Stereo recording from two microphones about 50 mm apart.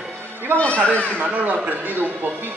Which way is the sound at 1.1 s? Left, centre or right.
Right.